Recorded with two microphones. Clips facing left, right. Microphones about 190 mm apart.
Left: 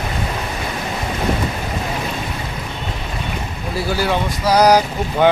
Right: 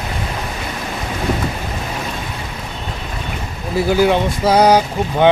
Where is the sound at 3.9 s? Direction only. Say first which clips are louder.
Right 6 dB; 15° right (ahead or behind).